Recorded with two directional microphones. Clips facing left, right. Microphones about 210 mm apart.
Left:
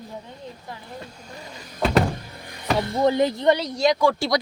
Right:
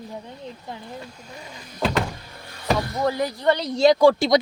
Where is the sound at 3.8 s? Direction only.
30° right (ahead or behind).